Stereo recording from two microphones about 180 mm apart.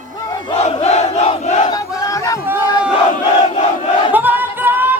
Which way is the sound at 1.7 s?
20° left (ahead or behind).